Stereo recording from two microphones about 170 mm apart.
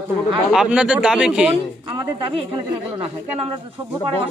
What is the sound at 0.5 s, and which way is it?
Speech, 5° right (ahead or behind).